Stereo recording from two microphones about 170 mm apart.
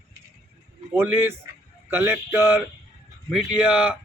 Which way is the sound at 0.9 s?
15° right (ahead or behind).